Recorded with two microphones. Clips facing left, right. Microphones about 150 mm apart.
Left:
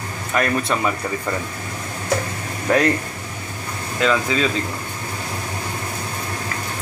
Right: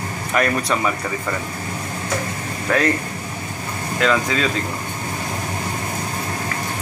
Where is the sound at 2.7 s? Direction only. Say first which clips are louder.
Left 2 dB; 20° left (ahead or behind).